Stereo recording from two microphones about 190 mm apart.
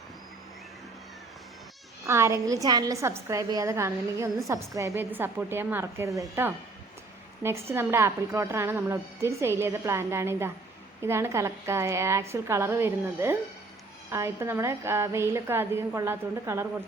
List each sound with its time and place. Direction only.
2.0 s a woman's voice: 15° right (ahead or behind)
7.7 s a woman's voice: 15° right (ahead or behind)